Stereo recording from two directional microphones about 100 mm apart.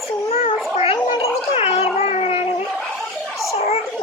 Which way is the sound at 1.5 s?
75° left (ahead or behind).